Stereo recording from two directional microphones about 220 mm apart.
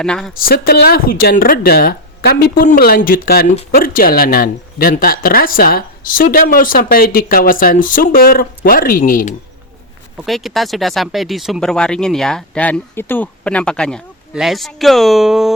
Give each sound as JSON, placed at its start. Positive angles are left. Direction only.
{"t": 0.0, "sound": "speech", "side_deg": 0}
{"t": 0.3, "sound": "speech", "side_deg": 40}
{"t": 10.2, "sound": "speech", "side_deg": 0}